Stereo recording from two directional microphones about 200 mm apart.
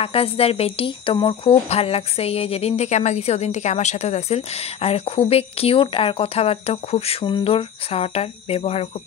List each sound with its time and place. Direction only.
0.0 s speech: 30° left (ahead or behind)